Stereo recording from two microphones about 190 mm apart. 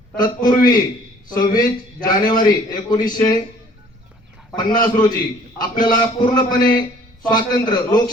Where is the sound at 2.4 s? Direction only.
20° left (ahead or behind).